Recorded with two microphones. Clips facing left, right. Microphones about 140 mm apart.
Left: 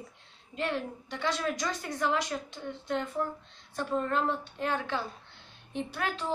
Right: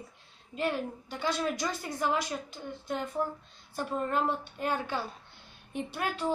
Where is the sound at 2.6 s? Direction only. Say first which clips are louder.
Left 2 dB; 20° right (ahead or behind).